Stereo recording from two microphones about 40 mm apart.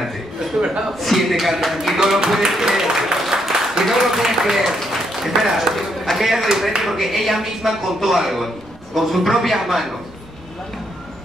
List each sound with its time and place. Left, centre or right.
0.6 s chuckle: centre
0.9 s speech: centre
2.7 s a sound: centre
4.0 s speech: centre